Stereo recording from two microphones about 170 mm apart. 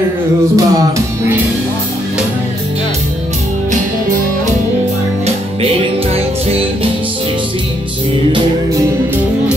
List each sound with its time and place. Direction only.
0.6 s music: 20° right (ahead or behind)